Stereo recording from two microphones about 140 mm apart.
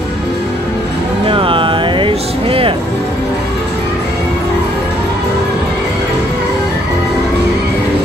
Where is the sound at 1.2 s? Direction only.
40° right (ahead or behind).